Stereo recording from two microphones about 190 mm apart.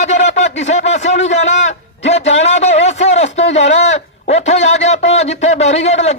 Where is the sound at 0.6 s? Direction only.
35° left (ahead or behind).